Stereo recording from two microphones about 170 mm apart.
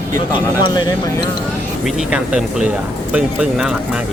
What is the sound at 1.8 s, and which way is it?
Speech, 5° right (ahead or behind).